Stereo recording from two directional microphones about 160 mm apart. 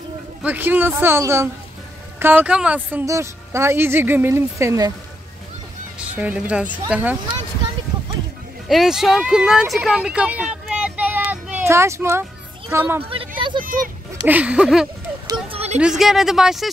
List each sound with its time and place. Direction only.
0.4 s a woman's voice: 10° right (ahead or behind)
5.9 s a woman's voice: 10° right (ahead or behind)
8.6 s speech: centre (ahead or behind)
13.6 s speech: 60° right (ahead or behind)
14.2 s a woman's voice: 10° right (ahead or behind)
15.2 s a sound: 35° right (ahead or behind)
15.8 s speech: centre (ahead or behind)